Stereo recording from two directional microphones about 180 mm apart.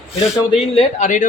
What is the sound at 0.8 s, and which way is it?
Speech, 45° left (ahead or behind).